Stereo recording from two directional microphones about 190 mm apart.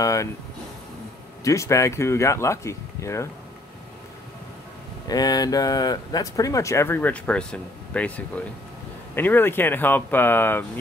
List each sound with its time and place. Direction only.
0.0 s speech: 15° left (ahead or behind)
1.4 s speech: 15° left (ahead or behind)
5.0 s speech: 20° left (ahead or behind)
9.1 s speech: 10° left (ahead or behind)